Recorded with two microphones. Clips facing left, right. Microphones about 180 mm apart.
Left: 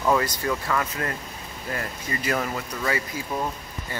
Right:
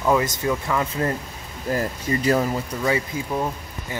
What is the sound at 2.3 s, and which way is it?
Speech, 30° right (ahead or behind).